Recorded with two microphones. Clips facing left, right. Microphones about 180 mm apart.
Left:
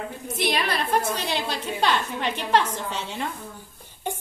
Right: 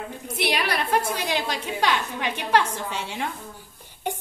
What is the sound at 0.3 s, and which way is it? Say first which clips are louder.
A woman's voice: even; 10° right (ahead or behind).